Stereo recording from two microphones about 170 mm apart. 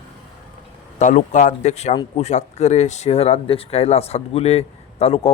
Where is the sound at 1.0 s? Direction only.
45° left (ahead or behind).